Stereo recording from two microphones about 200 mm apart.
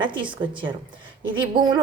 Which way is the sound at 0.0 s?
25° right (ahead or behind).